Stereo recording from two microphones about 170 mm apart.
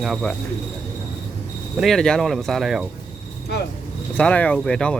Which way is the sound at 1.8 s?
Centre (ahead or behind).